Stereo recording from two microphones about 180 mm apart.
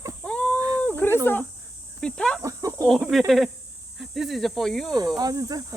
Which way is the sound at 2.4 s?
20° right (ahead or behind).